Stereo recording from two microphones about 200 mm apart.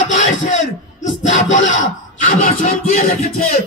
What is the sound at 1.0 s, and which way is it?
Speech, 40° left (ahead or behind).